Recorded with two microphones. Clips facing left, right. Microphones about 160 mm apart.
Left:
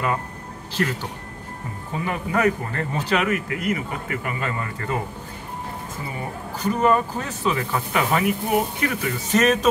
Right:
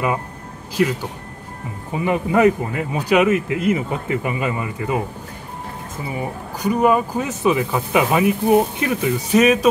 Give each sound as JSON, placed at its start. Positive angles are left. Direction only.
{"t": 1.9, "sound": "speech", "side_deg": -15}
{"t": 6.1, "sound": "speech", "side_deg": -10}
{"t": 9.3, "sound": "speech", "side_deg": -10}